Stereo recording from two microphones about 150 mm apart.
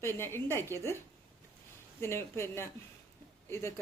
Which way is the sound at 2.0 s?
15° left (ahead or behind).